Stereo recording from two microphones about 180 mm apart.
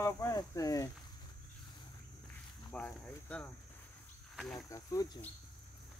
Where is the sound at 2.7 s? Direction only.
5° left (ahead or behind).